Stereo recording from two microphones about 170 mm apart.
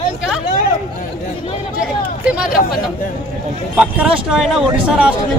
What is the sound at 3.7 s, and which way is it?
Speech, 5° right (ahead or behind).